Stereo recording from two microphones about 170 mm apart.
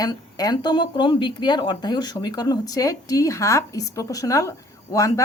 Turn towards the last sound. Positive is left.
turn(degrees=20)  # may be behind; listen again after turning